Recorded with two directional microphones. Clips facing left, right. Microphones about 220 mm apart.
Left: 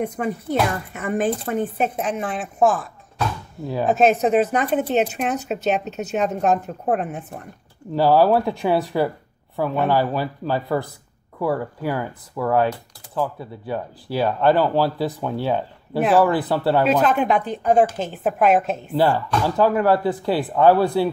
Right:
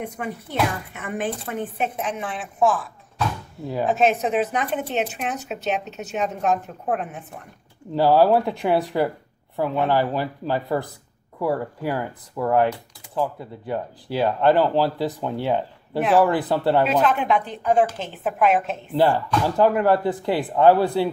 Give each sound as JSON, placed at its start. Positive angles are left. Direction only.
{"t": 0.0, "sound": "speech", "side_deg": 45}
{"t": 3.8, "sound": "speech", "side_deg": 45}
{"t": 7.9, "sound": "speech", "side_deg": -15}
{"t": 17.0, "sound": "speech", "side_deg": 40}
{"t": 18.9, "sound": "speech", "side_deg": -15}